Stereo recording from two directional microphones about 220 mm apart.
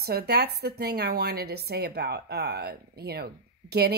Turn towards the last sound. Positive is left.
turn(degrees=-45)  # may be behind; listen again after turning